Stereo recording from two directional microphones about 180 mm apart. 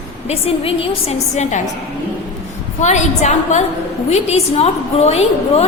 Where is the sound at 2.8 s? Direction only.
40° left (ahead or behind).